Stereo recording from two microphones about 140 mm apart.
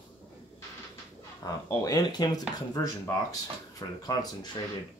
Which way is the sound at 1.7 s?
25° left (ahead or behind).